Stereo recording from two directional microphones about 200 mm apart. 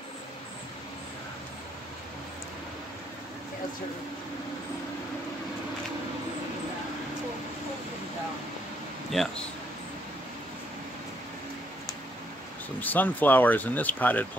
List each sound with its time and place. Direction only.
9.1 s speech: centre (ahead or behind)
12.8 s speech: 10° left (ahead or behind)